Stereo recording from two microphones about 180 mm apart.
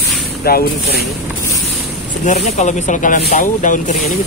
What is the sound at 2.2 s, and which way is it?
Speech, 40° left (ahead or behind).